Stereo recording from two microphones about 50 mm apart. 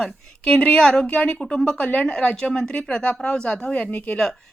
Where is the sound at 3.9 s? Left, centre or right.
Left.